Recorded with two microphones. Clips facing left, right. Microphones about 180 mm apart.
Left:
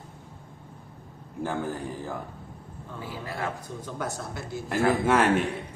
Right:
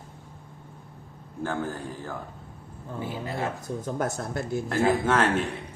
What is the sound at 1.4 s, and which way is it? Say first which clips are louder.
Speech: even; 10° left (ahead or behind).